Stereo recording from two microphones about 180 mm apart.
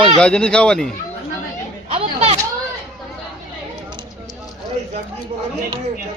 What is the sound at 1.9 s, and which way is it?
Chatter, 35° right (ahead or behind).